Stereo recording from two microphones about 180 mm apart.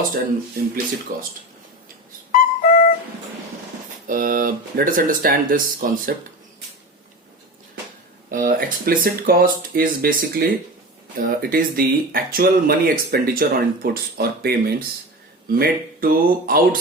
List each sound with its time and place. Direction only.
1.1 s speech: 50° right (ahead or behind)
2.4 s music: 55° left (ahead or behind)
4.0 s speech: 50° right (ahead or behind)
8.3 s speech: 50° right (ahead or behind)